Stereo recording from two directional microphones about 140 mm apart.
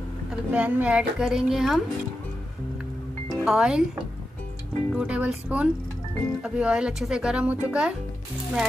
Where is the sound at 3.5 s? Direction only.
5° right (ahead or behind).